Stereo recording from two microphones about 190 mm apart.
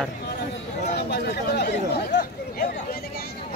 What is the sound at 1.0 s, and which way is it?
Speech, 60° left (ahead or behind).